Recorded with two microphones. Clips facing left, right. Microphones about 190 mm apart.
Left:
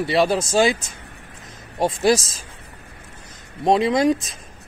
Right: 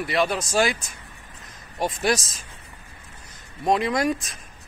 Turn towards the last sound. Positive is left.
turn(degrees=25)  # may be behind; listen again after turning